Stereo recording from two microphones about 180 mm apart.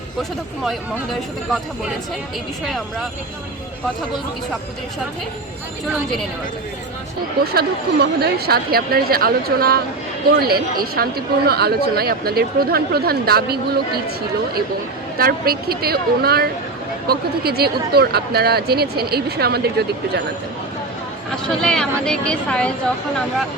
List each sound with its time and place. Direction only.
0.2 s speech: centre (ahead or behind)
7.5 s speech: 60° right (ahead or behind)
15.2 s speech: 55° right (ahead or behind)
21.4 s speech: 5° left (ahead or behind)